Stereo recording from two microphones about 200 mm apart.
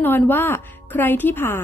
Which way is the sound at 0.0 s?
10° left (ahead or behind).